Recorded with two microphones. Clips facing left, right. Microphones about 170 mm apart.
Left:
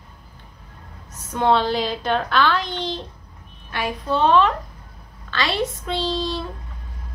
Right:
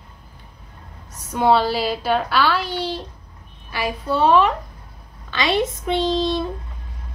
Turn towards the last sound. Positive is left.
turn(degrees=-20)  # may be behind; listen again after turning